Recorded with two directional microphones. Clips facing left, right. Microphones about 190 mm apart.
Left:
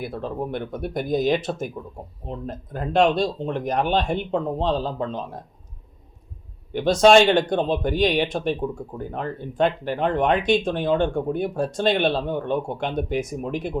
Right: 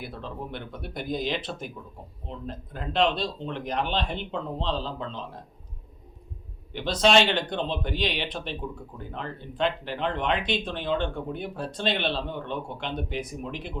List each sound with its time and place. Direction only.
0.0 s speech: 45° left (ahead or behind)
6.7 s speech: 45° left (ahead or behind)